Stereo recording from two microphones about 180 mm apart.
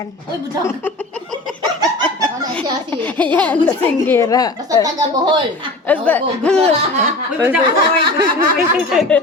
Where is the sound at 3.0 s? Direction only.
10° left (ahead or behind).